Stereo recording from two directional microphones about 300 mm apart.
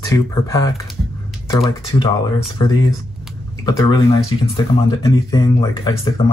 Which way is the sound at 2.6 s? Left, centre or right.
Centre.